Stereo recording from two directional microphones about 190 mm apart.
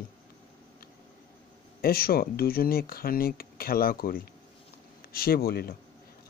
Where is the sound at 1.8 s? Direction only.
55° left (ahead or behind).